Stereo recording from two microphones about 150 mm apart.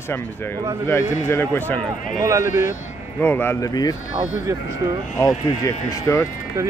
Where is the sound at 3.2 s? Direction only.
15° left (ahead or behind).